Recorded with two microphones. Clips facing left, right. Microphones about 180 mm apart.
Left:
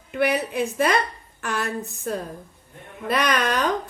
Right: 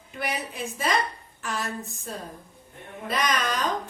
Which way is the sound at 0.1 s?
65° left (ahead or behind).